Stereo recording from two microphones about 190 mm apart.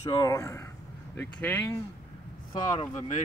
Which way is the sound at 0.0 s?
15° left (ahead or behind).